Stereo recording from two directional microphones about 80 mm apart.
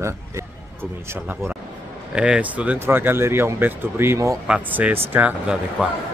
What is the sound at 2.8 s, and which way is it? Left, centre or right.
Speech, right.